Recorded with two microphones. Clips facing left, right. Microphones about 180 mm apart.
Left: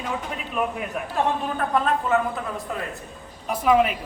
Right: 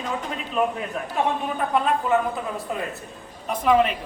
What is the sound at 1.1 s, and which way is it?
A woman's voice, 5° right (ahead or behind).